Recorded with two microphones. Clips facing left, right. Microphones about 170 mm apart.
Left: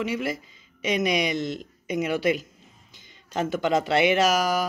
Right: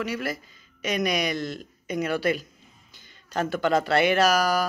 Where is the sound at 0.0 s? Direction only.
25° left (ahead or behind).